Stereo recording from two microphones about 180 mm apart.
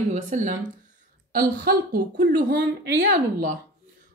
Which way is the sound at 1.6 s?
55° right (ahead or behind).